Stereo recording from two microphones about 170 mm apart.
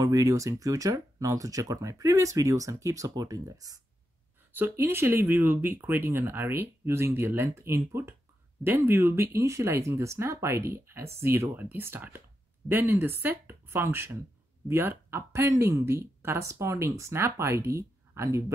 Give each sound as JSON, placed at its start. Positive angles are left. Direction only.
{"t": 0.0, "sound": "speech", "side_deg": -20}